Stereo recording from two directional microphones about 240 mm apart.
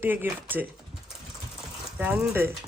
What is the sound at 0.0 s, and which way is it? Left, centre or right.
Speech, centre.